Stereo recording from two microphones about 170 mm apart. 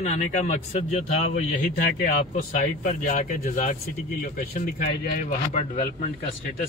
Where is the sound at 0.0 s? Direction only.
45° left (ahead or behind).